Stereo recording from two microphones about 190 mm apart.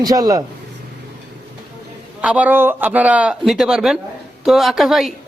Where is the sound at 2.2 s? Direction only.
5° right (ahead or behind).